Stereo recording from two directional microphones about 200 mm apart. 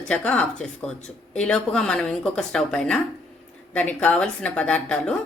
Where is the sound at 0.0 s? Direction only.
5° left (ahead or behind).